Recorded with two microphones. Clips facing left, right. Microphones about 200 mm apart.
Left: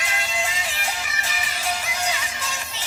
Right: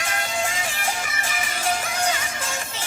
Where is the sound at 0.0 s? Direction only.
50° right (ahead or behind).